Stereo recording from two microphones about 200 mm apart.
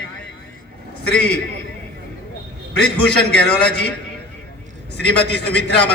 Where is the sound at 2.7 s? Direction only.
55° left (ahead or behind).